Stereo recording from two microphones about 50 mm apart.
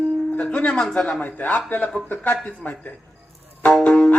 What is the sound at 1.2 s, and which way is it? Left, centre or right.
Speech, left.